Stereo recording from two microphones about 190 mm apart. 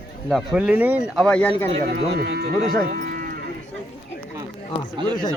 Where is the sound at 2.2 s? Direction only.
55° right (ahead or behind).